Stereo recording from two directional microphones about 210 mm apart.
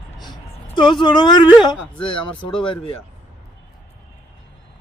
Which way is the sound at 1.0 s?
20° left (ahead or behind).